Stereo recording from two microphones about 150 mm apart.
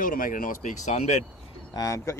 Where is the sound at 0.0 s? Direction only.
65° left (ahead or behind); by 1.2 s 50° left (ahead or behind).